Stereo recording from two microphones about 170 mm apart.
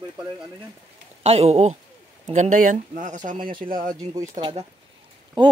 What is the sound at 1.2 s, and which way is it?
A man's voice, 40° right (ahead or behind).